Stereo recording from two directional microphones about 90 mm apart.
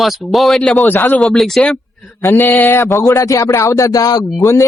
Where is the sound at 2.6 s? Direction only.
25° left (ahead or behind).